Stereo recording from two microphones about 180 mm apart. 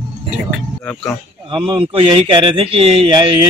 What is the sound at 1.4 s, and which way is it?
Speech, 30° right (ahead or behind).